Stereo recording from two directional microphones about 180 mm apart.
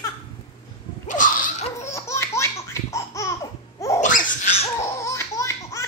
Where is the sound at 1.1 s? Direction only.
45° left (ahead or behind).